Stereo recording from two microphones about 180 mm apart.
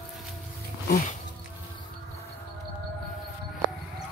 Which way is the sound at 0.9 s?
50° left (ahead or behind).